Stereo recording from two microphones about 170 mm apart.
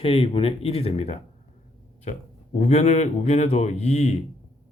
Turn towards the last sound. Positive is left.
turn(degrees=40)  # may be behind; listen again after turning